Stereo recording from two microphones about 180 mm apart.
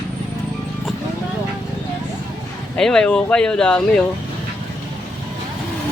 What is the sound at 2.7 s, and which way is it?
Speech, 5° left (ahead or behind).